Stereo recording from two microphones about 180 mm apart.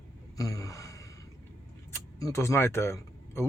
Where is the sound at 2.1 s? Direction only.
15° left (ahead or behind).